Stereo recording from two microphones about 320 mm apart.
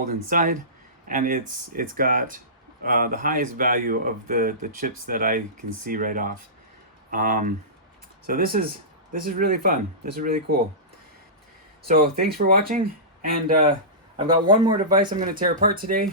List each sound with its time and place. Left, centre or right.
0.0 s speech: right
11.9 s speech: right
14.2 s speech: centre
15.4 s speech: right